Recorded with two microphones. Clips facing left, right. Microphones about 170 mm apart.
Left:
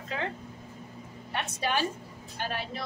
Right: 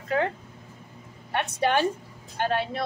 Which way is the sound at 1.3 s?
60° right (ahead or behind).